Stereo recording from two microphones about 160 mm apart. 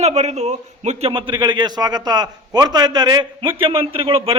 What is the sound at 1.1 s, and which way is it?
A man's voice, 30° right (ahead or behind).